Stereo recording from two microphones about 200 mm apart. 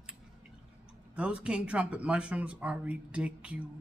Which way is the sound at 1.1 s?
5° right (ahead or behind).